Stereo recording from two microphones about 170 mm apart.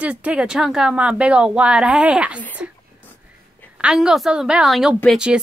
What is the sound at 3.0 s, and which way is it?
Whispering, 10° left (ahead or behind).